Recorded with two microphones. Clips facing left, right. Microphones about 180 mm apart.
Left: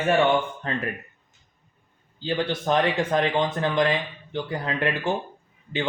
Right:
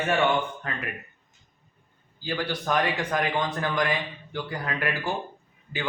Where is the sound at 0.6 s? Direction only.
30° left (ahead or behind).